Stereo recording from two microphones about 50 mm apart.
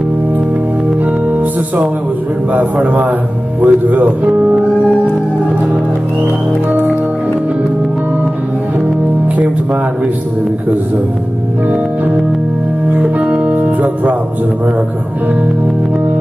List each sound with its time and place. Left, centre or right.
2.5 s speech: right
13.0 s music: right